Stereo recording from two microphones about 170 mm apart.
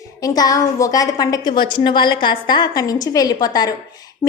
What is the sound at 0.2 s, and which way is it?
A woman's voice, 20° left (ahead or behind).